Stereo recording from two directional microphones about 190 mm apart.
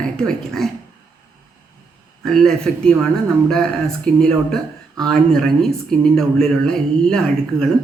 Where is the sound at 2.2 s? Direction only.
Centre (ahead or behind).